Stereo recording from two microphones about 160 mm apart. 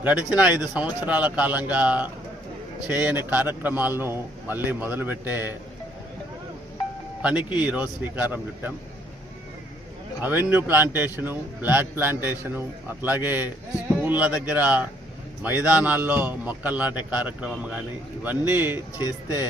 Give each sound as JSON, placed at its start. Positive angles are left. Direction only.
{"t": 0.0, "sound": "speech", "side_deg": -10}
{"t": 7.2, "sound": "speech", "side_deg": -10}
{"t": 10.2, "sound": "speech", "side_deg": -10}
{"t": 19.0, "sound": "speech", "side_deg": 20}